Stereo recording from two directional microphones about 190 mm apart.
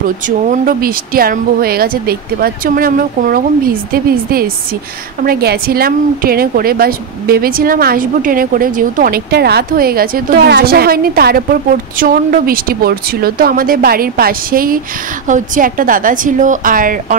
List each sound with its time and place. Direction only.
0.5 s a woman's voice: 50° right (ahead or behind)